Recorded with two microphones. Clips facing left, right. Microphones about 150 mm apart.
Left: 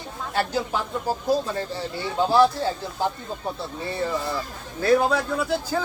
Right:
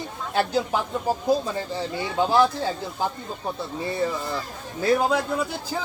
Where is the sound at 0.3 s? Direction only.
15° right (ahead or behind).